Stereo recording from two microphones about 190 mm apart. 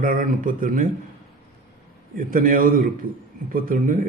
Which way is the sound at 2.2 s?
45° right (ahead or behind).